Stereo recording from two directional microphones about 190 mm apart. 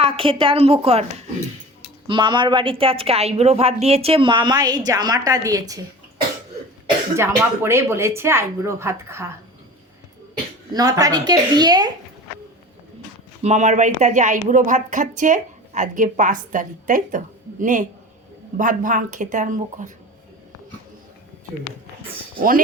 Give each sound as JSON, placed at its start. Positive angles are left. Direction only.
{"t": 0.0, "sound": "a woman's voice", "side_deg": -30}
{"t": 7.2, "sound": "speech", "side_deg": -15}
{"t": 10.7, "sound": "speech", "side_deg": -20}
{"t": 13.4, "sound": "a woman's voice", "side_deg": -40}
{"t": 22.4, "sound": "a woman's voice", "side_deg": -50}